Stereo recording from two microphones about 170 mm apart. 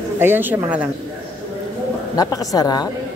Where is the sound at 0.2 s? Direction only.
10° right (ahead or behind).